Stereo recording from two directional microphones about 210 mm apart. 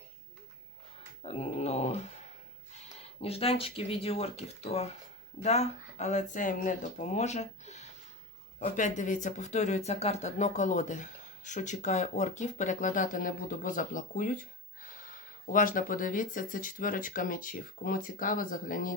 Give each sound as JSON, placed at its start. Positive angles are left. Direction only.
{"t": 1.2, "sound": "speech", "side_deg": 30}
{"t": 3.2, "sound": "speech", "side_deg": 30}